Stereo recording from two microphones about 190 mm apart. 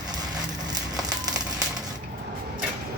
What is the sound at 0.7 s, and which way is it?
Crumpling, 20° right (ahead or behind).